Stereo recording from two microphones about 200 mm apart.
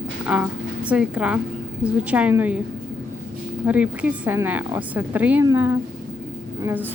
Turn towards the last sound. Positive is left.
turn(degrees=-10)  # may be behind; listen again after turning